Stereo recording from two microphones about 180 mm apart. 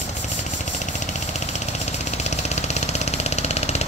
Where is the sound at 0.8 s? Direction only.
40° left (ahead or behind).